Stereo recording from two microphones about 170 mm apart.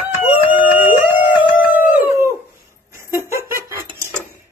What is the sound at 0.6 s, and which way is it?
Howl, 10° right (ahead or behind).